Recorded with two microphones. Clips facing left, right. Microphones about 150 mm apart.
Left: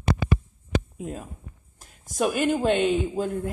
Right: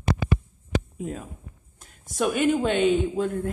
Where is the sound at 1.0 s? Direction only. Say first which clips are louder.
Right 1 dB; centre (ahead or behind).